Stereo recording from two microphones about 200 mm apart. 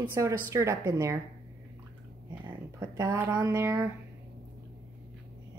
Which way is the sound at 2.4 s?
20° right (ahead or behind).